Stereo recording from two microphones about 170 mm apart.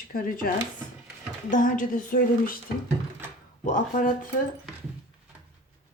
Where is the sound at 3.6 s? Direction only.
50° left (ahead or behind).